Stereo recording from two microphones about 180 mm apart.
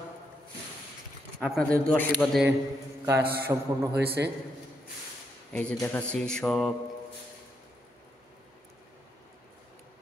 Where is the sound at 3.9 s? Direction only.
65° right (ahead or behind).